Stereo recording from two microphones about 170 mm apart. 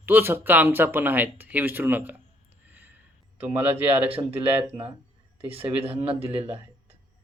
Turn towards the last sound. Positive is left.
turn(degrees=-35)  # may be behind; listen again after turning